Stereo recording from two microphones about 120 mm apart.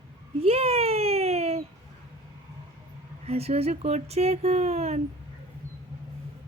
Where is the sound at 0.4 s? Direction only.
55° right (ahead or behind).